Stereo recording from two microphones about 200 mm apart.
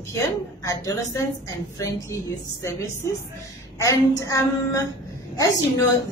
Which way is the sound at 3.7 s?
15° left (ahead or behind).